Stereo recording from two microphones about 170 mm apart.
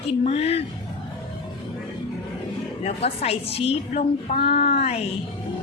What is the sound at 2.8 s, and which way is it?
A woman's voice, 35° left (ahead or behind).